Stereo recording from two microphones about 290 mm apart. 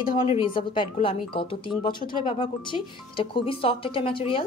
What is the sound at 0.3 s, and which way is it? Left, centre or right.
Speech, centre.